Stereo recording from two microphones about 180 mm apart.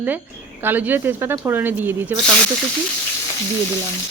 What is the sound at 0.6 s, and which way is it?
Speech, 10° right (ahead or behind).